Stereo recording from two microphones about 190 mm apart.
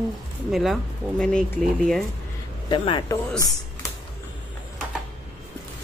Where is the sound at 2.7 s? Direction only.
25° left (ahead or behind).